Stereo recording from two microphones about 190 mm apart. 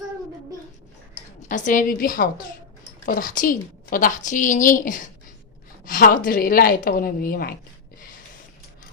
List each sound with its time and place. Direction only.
1.4 s a woman's voice: 40° left (ahead or behind)